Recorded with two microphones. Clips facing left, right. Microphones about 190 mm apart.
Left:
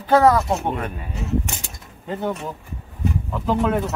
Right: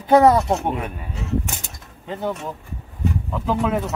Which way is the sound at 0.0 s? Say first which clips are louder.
Right 2 dB; 20° right (ahead or behind).